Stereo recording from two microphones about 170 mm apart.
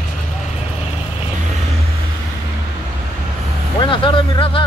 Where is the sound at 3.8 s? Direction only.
30° left (ahead or behind).